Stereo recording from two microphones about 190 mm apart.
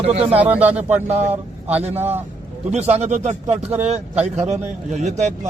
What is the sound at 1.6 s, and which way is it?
Speech, 35° right (ahead or behind).